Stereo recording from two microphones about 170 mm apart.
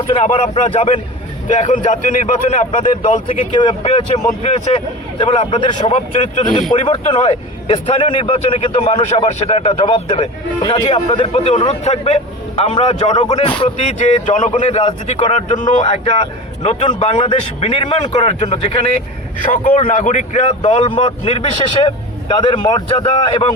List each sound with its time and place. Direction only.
0.1 s a man's voice: 40° left (ahead or behind)
1.5 s a man's voice: 45° left (ahead or behind)
4.7 s a man's voice: 30° left (ahead or behind)
6.1 s a man's voice: 40° left (ahead or behind)
6.4 s a man's voice: 30° left (ahead or behind)
10.6 s a man's voice: 20° left (ahead or behind)
11.4 s a man's voice: 40° left (ahead or behind)
13.6 s a man's voice: 45° left (ahead or behind)
14.8 s a man's voice: 35° left (ahead or behind)
19.5 s a man's voice: 50° left (ahead or behind); by 23.5 s 30° left (ahead or behind)